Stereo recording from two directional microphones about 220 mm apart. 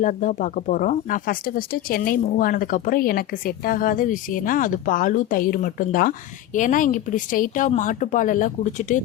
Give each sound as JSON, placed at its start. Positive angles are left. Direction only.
{"t": 0.0, "sound": "speech", "side_deg": 35}